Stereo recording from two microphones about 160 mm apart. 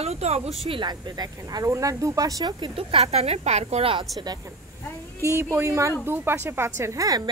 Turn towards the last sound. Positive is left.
turn(degrees=-20)  # may be behind; listen again after turning